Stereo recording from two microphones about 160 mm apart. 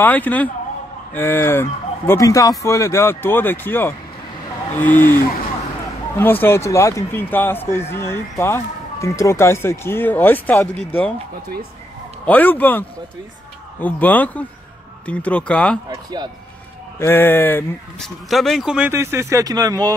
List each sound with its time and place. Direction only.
0.0 s a man's voice: 10° left (ahead or behind)
6.1 s a man's voice: 15° left (ahead or behind)
12.3 s a man's voice: 10° left (ahead or behind)
15.9 s speech: 25° right (ahead or behind)
17.0 s speech: 15° left (ahead or behind); by 18.9 s 5° right (ahead or behind)
18.9 s speech: 15° right (ahead or behind)